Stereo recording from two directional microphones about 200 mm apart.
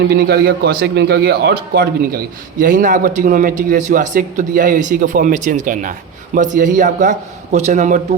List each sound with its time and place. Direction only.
0.1 s a man's voice: 55° right (ahead or behind); by 8.0 s 35° right (ahead or behind)